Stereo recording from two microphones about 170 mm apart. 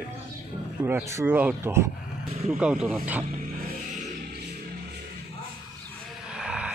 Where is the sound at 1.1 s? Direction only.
15° right (ahead or behind).